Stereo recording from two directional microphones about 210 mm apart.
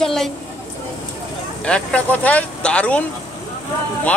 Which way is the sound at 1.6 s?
5° left (ahead or behind).